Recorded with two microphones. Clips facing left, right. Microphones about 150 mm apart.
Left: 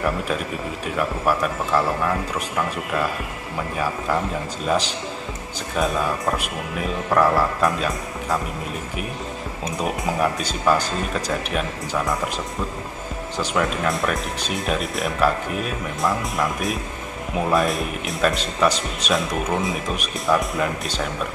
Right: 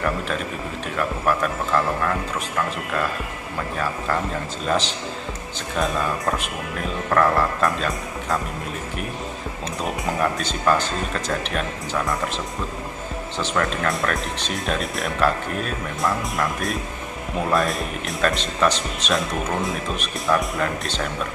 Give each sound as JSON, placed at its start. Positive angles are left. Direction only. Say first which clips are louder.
{"t": 0.9, "sound": "speech", "louder": "left 1 dB", "side_deg": 10}
{"t": 10.0, "sound": "speech", "louder": "even", "side_deg": 5}
{"t": 13.4, "sound": "speech", "louder": "left 1 dB", "side_deg": 10}